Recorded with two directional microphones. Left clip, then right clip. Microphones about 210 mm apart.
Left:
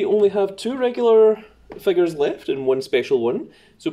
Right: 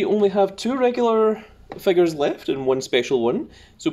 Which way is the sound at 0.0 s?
30° right (ahead or behind).